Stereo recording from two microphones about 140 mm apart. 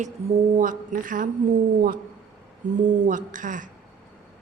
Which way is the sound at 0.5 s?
70° right (ahead or behind).